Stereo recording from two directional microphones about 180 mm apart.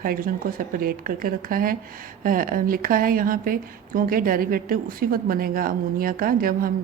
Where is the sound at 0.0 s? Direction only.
55° right (ahead or behind).